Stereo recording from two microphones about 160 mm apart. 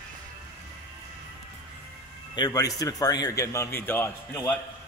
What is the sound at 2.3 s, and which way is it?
A man's voice, 25° left (ahead or behind).